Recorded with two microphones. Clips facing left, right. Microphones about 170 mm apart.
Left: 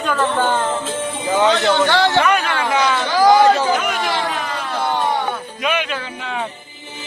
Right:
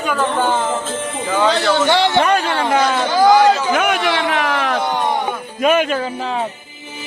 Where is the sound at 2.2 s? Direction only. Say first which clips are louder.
Right 1 dB; 30° right (ahead or behind).